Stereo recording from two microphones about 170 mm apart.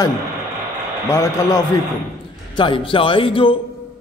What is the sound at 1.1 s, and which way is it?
Speech, 20° left (ahead or behind).